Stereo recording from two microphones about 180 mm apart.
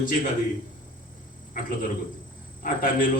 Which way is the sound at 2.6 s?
50° left (ahead or behind).